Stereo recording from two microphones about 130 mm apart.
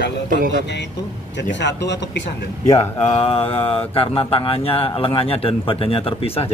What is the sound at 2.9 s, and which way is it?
Speech, 45° left (ahead or behind).